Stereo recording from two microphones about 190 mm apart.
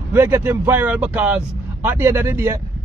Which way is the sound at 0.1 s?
10° right (ahead or behind).